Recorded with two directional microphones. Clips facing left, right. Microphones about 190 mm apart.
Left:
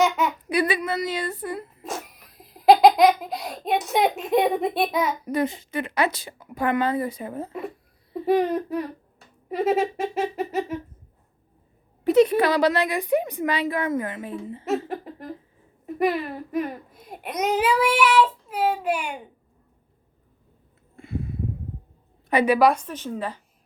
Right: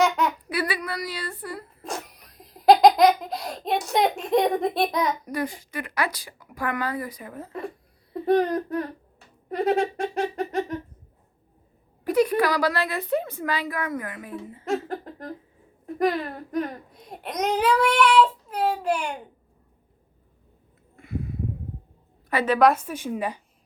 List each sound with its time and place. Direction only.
0.0 s a sound: centre (ahead or behind)
0.4 s a woman's voice: 20° left (ahead or behind)
1.8 s speech: centre (ahead or behind)
5.2 s a woman's voice: 25° left (ahead or behind)
8.2 s speech: 5° left (ahead or behind)
12.0 s a woman's voice: 25° left (ahead or behind)
14.6 s speech: 5° left (ahead or behind)
20.9 s a sound: 30° left (ahead or behind)
22.3 s a woman's voice: 15° left (ahead or behind)
22.5 s speech: centre (ahead or behind)